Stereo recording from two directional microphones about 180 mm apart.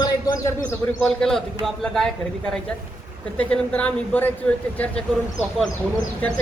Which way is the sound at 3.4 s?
5° left (ahead or behind).